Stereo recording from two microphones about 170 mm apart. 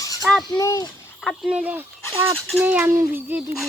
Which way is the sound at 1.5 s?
5° right (ahead or behind).